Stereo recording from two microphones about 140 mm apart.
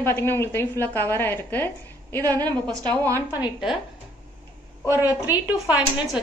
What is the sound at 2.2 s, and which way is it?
Speech, 30° right (ahead or behind).